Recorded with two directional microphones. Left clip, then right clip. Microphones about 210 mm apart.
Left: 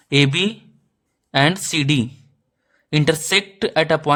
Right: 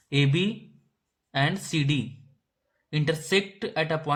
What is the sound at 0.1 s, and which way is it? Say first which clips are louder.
Speech: left 9 dB; 45° left (ahead or behind).